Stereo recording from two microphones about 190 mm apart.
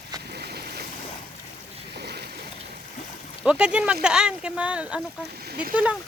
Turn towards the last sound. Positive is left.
turn(degrees=-5)  # may be behind; listen again after turning